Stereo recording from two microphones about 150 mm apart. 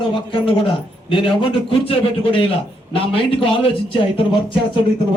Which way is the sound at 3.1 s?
35° left (ahead or behind).